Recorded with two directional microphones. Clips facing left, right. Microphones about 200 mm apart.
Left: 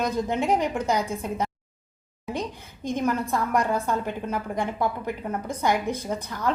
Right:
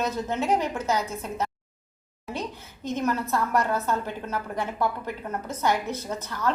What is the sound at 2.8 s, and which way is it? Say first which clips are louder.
A woman's voice: left 1 dB; 15° left (ahead or behind).